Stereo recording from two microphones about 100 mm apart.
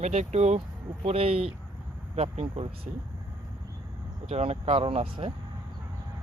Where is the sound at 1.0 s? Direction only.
75° right (ahead or behind).